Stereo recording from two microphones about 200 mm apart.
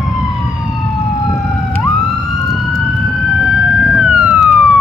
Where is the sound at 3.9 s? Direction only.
Centre (ahead or behind).